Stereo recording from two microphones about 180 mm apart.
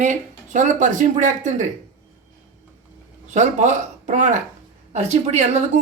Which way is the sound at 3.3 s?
40° right (ahead or behind).